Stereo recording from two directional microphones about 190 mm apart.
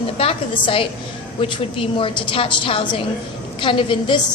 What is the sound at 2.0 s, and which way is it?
A woman's voice, 30° left (ahead or behind).